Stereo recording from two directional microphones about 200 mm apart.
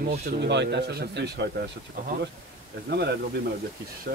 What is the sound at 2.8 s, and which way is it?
Speech, 55° right (ahead or behind).